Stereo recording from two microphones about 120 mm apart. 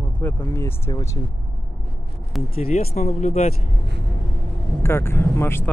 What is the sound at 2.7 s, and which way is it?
Speech, 65° left (ahead or behind).